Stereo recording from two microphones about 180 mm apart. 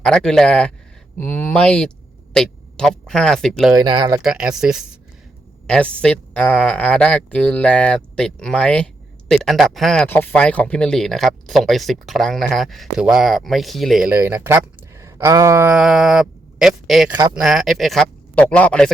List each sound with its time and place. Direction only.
0.0 s speech: 5° left (ahead or behind)
3.8 s speech: 25° right (ahead or behind)
4.2 s speech: 5° right (ahead or behind)
14.1 s speech: 15° right (ahead or behind); by 18.9 s 5° left (ahead or behind)